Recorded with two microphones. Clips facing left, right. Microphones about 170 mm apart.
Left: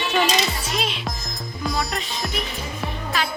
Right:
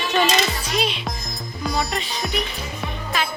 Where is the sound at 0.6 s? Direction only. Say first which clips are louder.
Right 2 dB; centre (ahead or behind).